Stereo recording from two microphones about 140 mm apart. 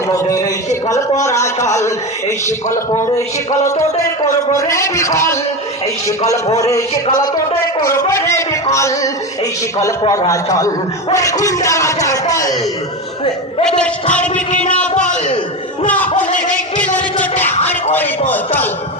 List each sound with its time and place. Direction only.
0.1 s a man's voice: 25° left (ahead or behind)
13.7 s a man's voice: 5° left (ahead or behind)
16.5 s music: 10° left (ahead or behind)
17.9 s a man's voice: 15° left (ahead or behind)